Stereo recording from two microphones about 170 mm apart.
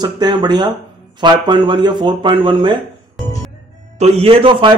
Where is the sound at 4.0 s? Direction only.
35° right (ahead or behind).